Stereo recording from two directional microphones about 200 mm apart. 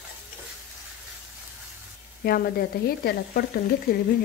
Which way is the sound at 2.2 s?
50° left (ahead or behind).